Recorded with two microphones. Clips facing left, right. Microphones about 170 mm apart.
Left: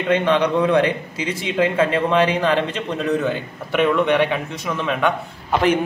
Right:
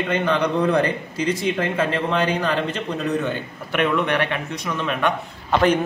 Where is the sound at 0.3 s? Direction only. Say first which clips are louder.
Left 2 dB; 90° left.